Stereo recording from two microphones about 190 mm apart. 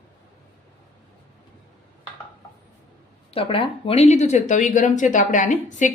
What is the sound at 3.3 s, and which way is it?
Speech, 30° left (ahead or behind).